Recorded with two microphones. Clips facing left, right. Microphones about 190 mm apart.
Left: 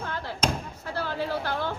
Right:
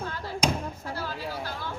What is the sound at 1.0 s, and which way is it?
Speech, 60° left (ahead or behind).